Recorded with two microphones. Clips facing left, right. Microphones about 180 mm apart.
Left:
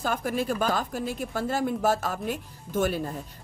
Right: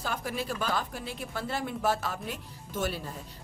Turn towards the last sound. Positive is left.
turn(degrees=50)  # may be behind; listen again after turning